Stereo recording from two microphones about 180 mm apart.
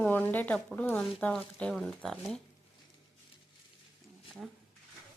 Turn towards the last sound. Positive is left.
turn(degrees=0)  # may be behind; listen again after turning